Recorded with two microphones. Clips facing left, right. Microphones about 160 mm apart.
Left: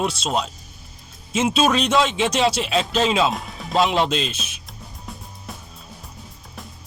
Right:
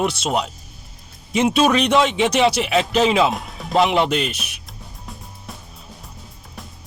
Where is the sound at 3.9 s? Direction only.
65° right (ahead or behind).